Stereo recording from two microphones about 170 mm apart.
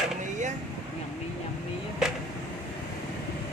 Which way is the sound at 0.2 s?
45° right (ahead or behind).